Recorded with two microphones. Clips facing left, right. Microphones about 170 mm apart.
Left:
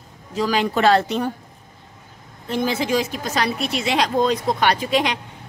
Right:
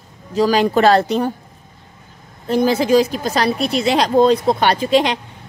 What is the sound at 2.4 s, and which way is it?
Speech, 40° right (ahead or behind).